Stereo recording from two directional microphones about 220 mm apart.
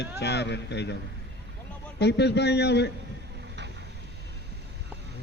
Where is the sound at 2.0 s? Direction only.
50° left (ahead or behind).